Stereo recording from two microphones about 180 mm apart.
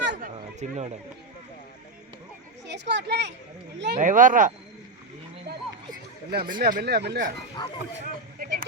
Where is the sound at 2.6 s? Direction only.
75° right (ahead or behind).